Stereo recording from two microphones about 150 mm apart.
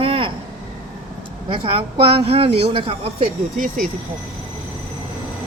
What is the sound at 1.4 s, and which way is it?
Speech, 35° right (ahead or behind).